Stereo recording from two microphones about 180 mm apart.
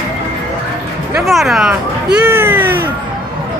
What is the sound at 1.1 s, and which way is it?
Speech, centre (ahead or behind).